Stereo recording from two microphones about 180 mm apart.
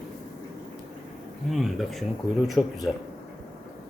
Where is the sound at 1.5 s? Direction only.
Centre (ahead or behind).